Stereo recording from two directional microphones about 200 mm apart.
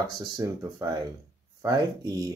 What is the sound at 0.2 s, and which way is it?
Speech, 20° right (ahead or behind).